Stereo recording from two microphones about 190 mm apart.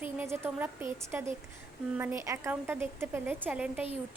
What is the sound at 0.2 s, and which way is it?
Speech, 10° right (ahead or behind).